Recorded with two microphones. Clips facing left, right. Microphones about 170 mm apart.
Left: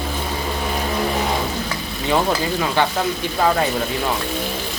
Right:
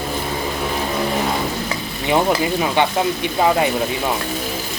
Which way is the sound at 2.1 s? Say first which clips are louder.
Right 2 dB; 15° right (ahead or behind).